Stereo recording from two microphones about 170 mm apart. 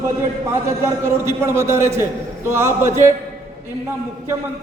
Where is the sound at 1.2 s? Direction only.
15° right (ahead or behind).